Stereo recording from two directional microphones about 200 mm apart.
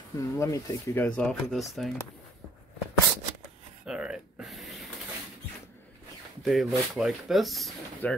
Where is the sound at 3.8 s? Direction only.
5° right (ahead or behind).